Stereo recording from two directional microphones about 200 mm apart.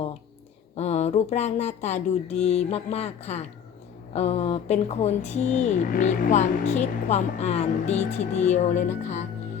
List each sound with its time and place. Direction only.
0.8 s speech: 35° left (ahead or behind)